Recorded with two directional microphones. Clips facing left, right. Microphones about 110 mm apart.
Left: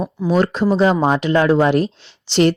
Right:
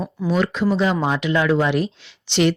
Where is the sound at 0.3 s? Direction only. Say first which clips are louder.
Left 3 dB; 40° left (ahead or behind).